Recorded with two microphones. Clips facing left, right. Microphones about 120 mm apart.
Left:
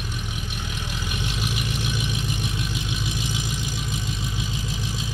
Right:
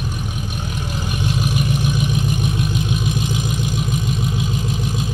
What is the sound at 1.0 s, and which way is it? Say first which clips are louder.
Vehicle: right 8 dB; 45° right (ahead or behind).